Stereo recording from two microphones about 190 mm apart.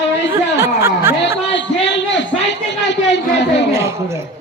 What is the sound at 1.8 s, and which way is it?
A woman's voice, 70° left (ahead or behind).